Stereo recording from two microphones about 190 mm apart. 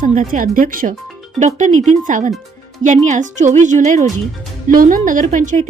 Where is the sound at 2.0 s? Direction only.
45° right (ahead or behind).